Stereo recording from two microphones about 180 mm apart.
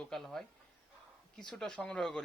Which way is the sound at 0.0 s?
5° left (ahead or behind).